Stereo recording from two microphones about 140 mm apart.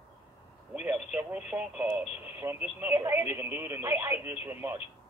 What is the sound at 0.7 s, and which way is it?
Speech, 5° right (ahead or behind).